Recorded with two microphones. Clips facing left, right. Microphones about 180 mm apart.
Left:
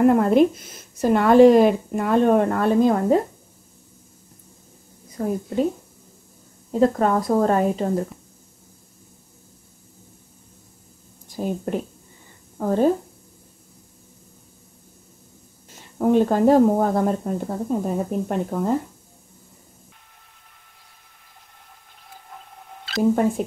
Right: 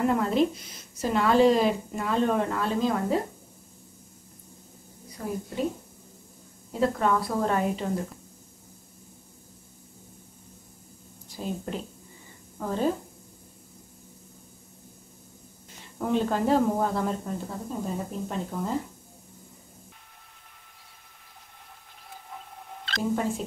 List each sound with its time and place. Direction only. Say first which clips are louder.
0.0 s speech: left 8 dB; 55° left (ahead or behind)
5.2 s speech: left 9 dB; 45° left (ahead or behind)
6.8 s speech: left 6 dB; 45° left (ahead or behind)
11.3 s a woman's voice: left 7 dB; 50° left (ahead or behind)
16.0 s speech: left 8 dB; 50° left (ahead or behind)
22.1 s wild animals: even; centre (ahead or behind)